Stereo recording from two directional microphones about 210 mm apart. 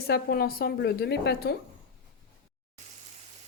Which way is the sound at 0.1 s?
45° left (ahead or behind).